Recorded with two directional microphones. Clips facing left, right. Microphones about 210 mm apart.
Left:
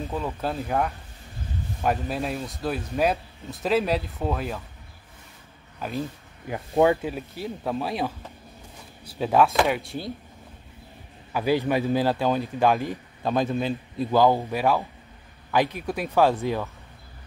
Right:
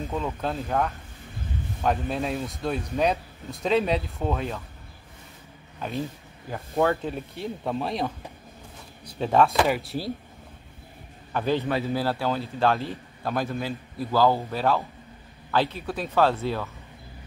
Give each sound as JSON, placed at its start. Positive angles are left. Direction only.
{"t": 0.1, "sound": "speech", "side_deg": 5}
{"t": 5.8, "sound": "speech", "side_deg": 0}
{"t": 6.5, "sound": "speech", "side_deg": 15}
{"t": 11.3, "sound": "a man's voice", "side_deg": 10}